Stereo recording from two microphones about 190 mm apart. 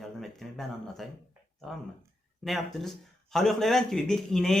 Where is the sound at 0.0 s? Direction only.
Centre (ahead or behind).